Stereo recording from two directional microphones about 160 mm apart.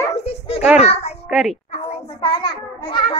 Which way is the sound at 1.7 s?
40° left (ahead or behind).